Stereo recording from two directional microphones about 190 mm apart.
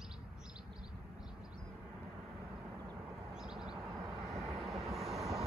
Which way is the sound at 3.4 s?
5° right (ahead or behind).